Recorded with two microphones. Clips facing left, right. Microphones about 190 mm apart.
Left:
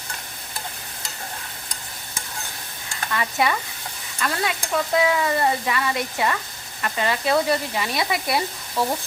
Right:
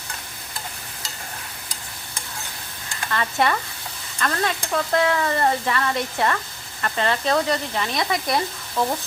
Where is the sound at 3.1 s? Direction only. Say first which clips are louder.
Right 1 dB; 5° left (ahead or behind).